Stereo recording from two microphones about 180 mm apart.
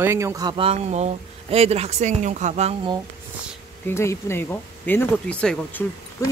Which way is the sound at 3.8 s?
15° left (ahead or behind).